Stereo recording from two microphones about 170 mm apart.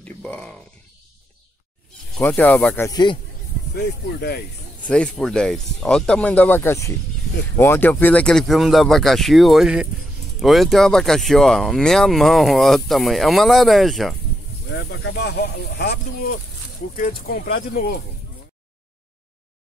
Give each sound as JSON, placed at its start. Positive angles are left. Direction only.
{"t": 0.0, "sound": "a sound", "side_deg": 5}
{"t": 2.1, "sound": "speech", "side_deg": 10}
{"t": 3.7, "sound": "speech", "side_deg": 70}
{"t": 4.8, "sound": "speech", "side_deg": 5}
{"t": 14.7, "sound": "speech", "side_deg": 90}